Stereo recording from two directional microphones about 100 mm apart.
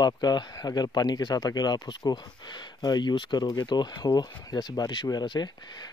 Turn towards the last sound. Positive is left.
turn(degrees=45)  # may be behind; listen again after turning